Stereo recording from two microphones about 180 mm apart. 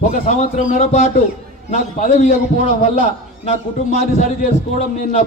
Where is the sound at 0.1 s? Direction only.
45° left (ahead or behind).